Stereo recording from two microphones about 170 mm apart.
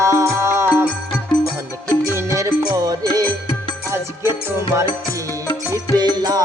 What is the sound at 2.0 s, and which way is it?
Music, 15° right (ahead or behind).